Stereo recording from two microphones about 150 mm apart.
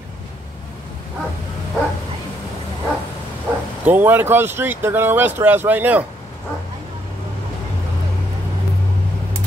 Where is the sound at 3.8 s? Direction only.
10° right (ahead or behind).